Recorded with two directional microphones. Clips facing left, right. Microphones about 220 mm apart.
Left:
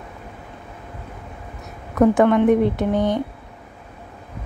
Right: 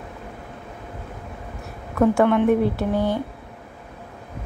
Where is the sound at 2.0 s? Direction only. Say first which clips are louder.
Left 2 dB; 15° left (ahead or behind).